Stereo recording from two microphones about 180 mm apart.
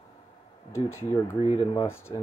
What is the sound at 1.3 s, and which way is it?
Speech, 30° left (ahead or behind).